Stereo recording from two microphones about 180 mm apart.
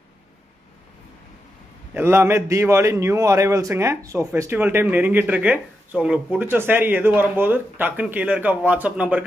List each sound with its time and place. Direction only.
2.0 s a man's voice: 15° right (ahead or behind)